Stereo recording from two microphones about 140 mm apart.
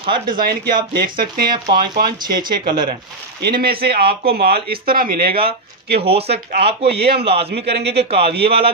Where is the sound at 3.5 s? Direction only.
90° right.